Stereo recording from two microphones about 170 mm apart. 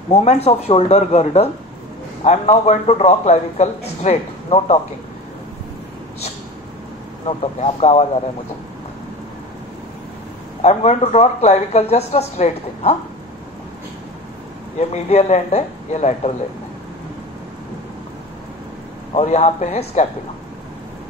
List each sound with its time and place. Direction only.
0.1 s a man's voice: 40° left (ahead or behind)
7.2 s a man's voice: 35° left (ahead or behind)
10.6 s a man's voice: 40° left (ahead or behind)
14.8 s a man's voice: 40° left (ahead or behind)
19.1 s a man's voice: 40° left (ahead or behind)